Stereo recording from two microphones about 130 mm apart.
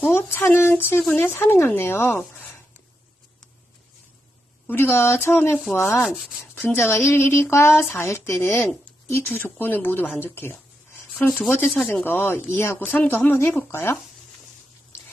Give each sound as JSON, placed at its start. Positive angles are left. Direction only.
{"t": 0.0, "sound": "speech", "side_deg": 15}
{"t": 4.6, "sound": "speech", "side_deg": 15}
{"t": 6.1, "sound": "rub", "side_deg": 0}
{"t": 6.4, "sound": "a woman's voice", "side_deg": 15}
{"t": 10.2, "sound": "a sound", "side_deg": 15}
{"t": 11.3, "sound": "speech", "side_deg": 10}